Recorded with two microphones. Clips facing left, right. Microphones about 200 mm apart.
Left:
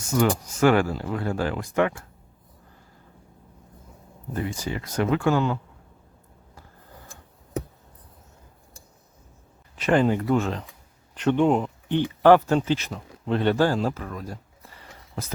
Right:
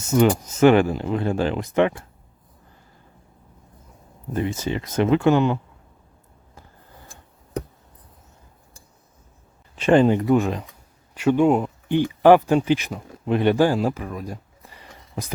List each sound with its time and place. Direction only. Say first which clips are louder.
0.1 s speech: right 5 dB; 20° right (ahead or behind)
4.4 s speech: right 5 dB; 20° right (ahead or behind)
9.7 s speech: right 5 dB; 25° right (ahead or behind)